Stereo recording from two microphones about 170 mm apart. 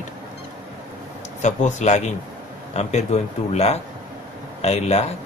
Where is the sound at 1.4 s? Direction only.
45° left (ahead or behind).